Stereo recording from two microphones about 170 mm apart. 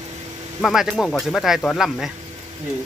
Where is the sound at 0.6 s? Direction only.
Centre (ahead or behind).